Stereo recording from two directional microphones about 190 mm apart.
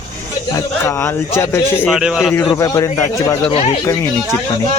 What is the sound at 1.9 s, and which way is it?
Speech, 5° right (ahead or behind).